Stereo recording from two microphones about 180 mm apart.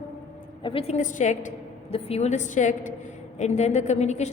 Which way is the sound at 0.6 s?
30° left (ahead or behind).